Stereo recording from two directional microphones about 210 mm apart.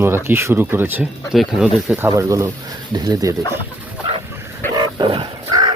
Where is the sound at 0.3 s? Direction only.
10° right (ahead or behind).